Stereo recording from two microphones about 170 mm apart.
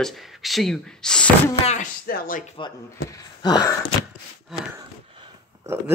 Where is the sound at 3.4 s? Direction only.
25° left (ahead or behind).